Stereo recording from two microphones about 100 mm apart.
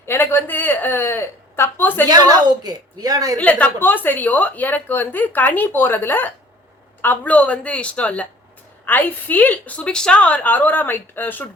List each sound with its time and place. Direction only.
0.0 s a sound: 25° left (ahead or behind)
2.0 s a woman's voice: 40° right (ahead or behind)
3.3 s a woman's voice: 15° left (ahead or behind)